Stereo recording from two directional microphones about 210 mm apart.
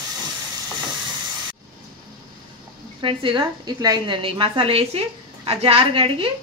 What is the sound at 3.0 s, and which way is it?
A woman's voice, 25° right (ahead or behind).